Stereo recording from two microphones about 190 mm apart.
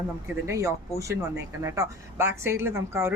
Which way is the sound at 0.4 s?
15° right (ahead or behind).